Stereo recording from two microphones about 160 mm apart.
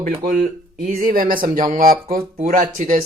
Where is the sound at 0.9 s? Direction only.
60° right (ahead or behind).